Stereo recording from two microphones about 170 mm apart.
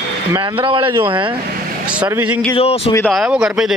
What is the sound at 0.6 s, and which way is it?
Speech, 30° right (ahead or behind).